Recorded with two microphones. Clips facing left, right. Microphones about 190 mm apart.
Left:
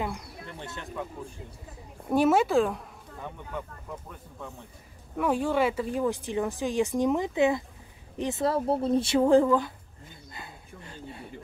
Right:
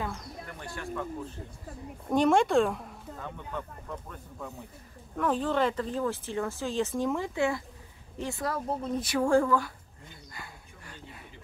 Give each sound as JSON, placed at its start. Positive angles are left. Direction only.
{"t": 0.5, "sound": "speech", "side_deg": 25}
{"t": 2.0, "sound": "speech", "side_deg": 5}
{"t": 3.2, "sound": "speech", "side_deg": 15}
{"t": 10.3, "sound": "a sound", "side_deg": 25}